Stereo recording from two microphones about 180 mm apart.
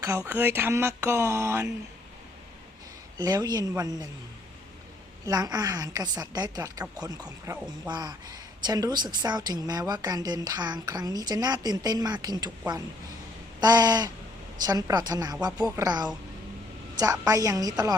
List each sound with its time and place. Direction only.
0.3 s speech: 10° right (ahead or behind)
3.2 s a woman's voice: 20° right (ahead or behind)
5.2 s a woman's voice: 20° right (ahead or behind)
13.6 s a woman's voice: 20° right (ahead or behind)